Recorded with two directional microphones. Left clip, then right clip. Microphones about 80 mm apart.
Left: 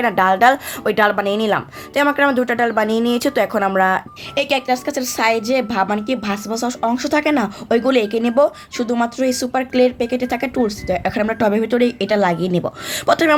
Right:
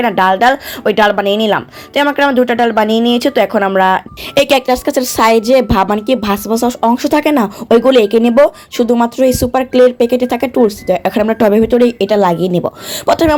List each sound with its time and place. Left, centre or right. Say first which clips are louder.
0.0 s a woman's voice: right 3 dB; centre
4.5 s a woman's voice: right 7 dB; right
11.7 s speech: right 6 dB; right
12.9 s speech: right 4 dB; centre